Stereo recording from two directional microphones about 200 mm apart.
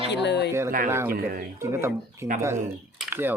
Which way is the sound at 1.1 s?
45° right (ahead or behind).